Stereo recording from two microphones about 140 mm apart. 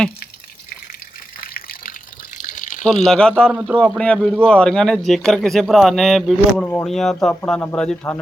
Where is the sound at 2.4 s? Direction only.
65° left (ahead or behind).